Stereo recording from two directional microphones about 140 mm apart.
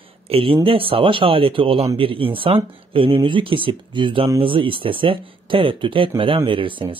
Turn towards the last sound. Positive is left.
turn(degrees=-35)  # may be behind; listen again after turning